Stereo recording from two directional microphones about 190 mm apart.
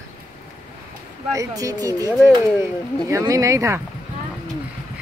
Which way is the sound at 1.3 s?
15° right (ahead or behind).